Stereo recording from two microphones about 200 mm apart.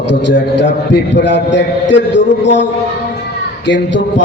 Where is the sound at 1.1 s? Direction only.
65° left (ahead or behind).